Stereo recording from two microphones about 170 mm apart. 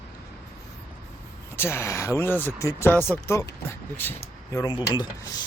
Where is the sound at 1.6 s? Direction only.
15° left (ahead or behind).